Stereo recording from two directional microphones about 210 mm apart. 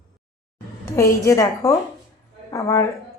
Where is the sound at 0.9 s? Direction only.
15° left (ahead or behind).